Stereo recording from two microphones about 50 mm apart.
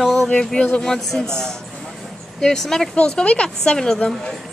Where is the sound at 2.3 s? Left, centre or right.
Centre.